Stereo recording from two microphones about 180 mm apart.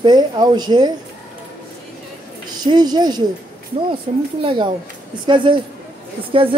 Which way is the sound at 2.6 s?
25° right (ahead or behind).